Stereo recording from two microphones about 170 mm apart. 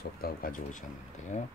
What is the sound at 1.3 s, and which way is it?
Speech, 45° left (ahead or behind).